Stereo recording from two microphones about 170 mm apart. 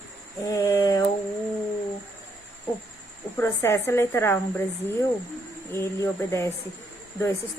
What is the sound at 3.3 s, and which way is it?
Speech, 15° left (ahead or behind).